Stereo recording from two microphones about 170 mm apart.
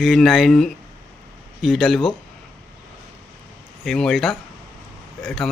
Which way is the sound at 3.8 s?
Centre (ahead or behind).